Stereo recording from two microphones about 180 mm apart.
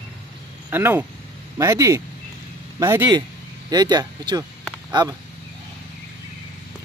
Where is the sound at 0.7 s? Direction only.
10° right (ahead or behind).